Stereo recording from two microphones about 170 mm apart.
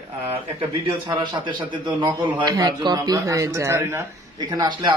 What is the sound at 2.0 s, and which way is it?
A man's voice, 25° right (ahead or behind).